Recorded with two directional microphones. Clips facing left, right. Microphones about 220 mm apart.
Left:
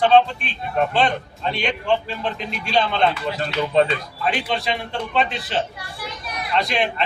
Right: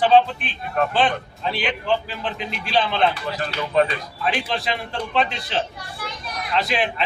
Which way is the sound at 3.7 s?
25° left (ahead or behind).